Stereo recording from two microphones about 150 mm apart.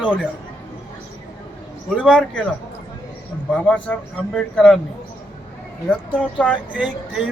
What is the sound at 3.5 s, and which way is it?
Speech, 10° left (ahead or behind).